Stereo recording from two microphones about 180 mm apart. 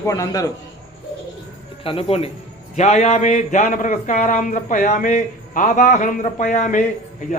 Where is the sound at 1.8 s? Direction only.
30° left (ahead or behind).